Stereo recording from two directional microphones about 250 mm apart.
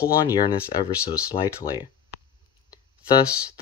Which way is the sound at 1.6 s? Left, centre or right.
Centre.